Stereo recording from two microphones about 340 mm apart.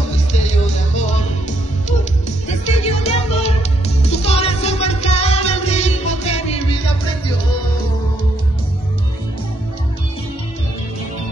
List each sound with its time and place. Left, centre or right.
0.1 s music: centre
2.4 s music: centre